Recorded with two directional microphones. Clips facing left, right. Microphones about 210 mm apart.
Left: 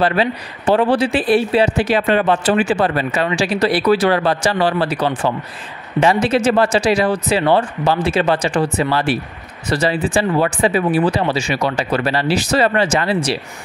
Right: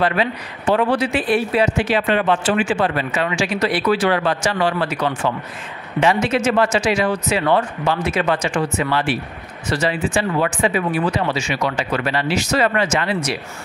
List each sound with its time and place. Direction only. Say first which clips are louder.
0.0 s speech: left 3 dB; 35° left (ahead or behind)